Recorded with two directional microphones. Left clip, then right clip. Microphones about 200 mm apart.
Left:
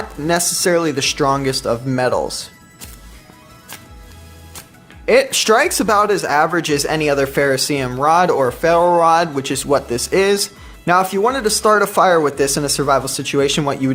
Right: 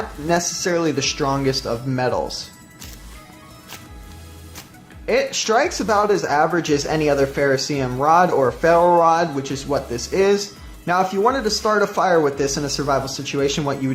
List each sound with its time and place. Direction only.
0.3 s speech: 35° left (ahead or behind)
5.0 s speech: 40° left (ahead or behind)